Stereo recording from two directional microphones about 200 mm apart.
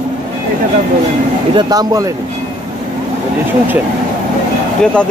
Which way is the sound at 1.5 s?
20° right (ahead or behind).